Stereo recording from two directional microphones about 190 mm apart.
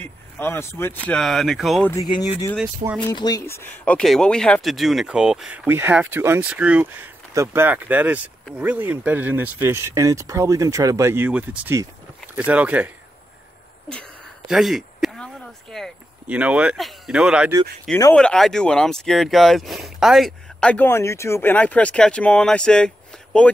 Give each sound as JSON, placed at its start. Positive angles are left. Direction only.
{"t": 0.0, "sound": "speech", "side_deg": 10}
{"t": 1.9, "sound": "speech", "side_deg": 15}
{"t": 14.5, "sound": "a sound", "side_deg": 0}
{"t": 18.1, "sound": "speech", "side_deg": 5}